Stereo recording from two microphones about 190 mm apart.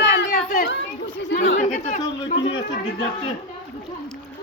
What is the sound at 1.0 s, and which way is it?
Chatter, 70° left (ahead or behind).